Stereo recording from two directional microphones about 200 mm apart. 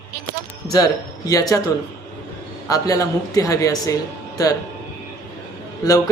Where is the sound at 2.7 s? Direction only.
15° left (ahead or behind).